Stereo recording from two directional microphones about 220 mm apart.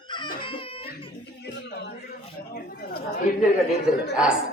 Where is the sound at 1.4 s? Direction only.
50° left (ahead or behind).